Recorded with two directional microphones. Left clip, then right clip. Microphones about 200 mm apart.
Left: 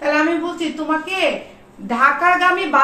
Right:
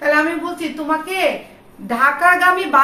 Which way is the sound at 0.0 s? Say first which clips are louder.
Right 1 dB; 15° right (ahead or behind).